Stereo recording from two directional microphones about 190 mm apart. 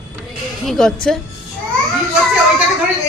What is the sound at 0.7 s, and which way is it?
Speech, 5° left (ahead or behind).